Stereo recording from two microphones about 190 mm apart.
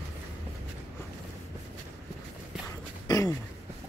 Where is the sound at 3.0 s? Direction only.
20° left (ahead or behind).